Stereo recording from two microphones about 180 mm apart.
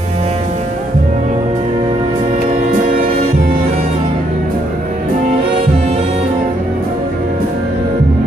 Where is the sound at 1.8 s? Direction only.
40° right (ahead or behind).